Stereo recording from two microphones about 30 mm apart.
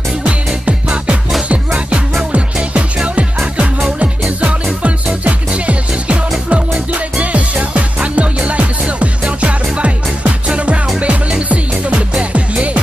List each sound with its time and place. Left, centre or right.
0.7 s music: right
4.8 s music: right
5.5 s music: right